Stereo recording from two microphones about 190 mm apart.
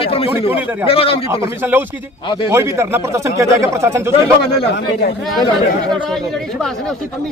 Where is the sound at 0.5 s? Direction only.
10° right (ahead or behind).